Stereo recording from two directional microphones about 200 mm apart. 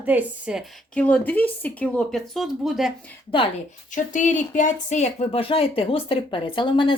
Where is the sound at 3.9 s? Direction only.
40° left (ahead or behind).